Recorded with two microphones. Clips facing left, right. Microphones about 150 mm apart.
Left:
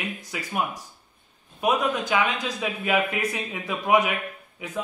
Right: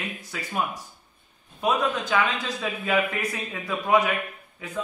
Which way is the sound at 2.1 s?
10° left (ahead or behind).